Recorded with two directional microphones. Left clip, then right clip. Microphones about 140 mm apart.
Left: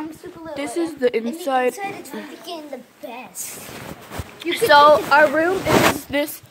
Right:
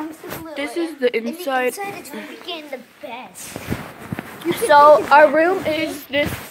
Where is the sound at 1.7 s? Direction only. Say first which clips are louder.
Even; 45° right (ahead or behind).